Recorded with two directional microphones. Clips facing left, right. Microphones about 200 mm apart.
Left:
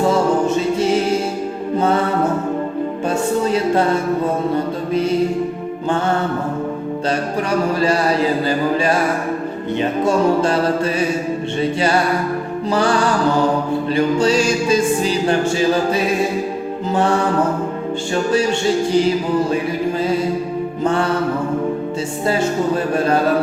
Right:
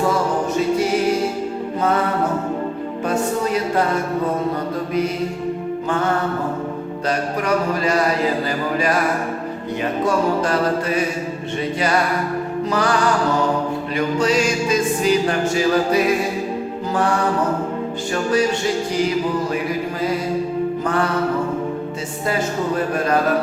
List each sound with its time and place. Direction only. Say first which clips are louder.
0.0 s music: left 4 dB; 25° left (ahead or behind)
3.1 s a sound: left 2 dB; 30° left (ahead or behind)
7.8 s a sound: left 2 dB; 30° left (ahead or behind)
8.4 s music: left 4 dB; 30° left (ahead or behind)
12.7 s music: left 3 dB; 30° left (ahead or behind)
20.8 s music: left 5 dB; 25° left (ahead or behind)